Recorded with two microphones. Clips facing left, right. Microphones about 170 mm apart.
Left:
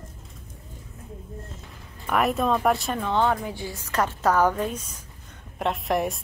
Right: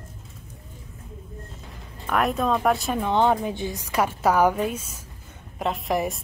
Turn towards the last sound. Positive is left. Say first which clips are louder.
# even
turn(degrees=0)  # may be behind; listen again after turning